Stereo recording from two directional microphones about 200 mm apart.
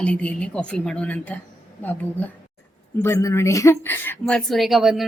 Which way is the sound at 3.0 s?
15° left (ahead or behind).